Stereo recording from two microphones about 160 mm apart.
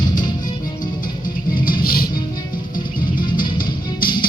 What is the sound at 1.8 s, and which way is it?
Music, 65° left (ahead or behind).